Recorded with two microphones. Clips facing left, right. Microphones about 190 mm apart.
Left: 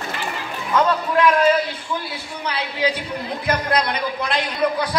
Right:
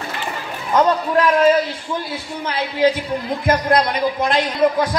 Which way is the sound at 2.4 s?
50° right (ahead or behind).